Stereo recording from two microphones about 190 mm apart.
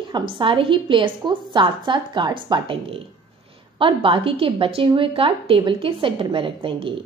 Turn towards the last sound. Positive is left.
turn(degrees=-25)  # may be behind; listen again after turning